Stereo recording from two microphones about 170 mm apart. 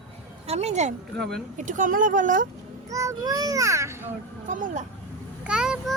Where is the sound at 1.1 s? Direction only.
5° left (ahead or behind).